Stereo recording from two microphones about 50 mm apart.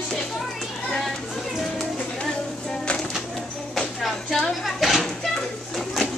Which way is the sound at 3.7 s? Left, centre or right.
Centre.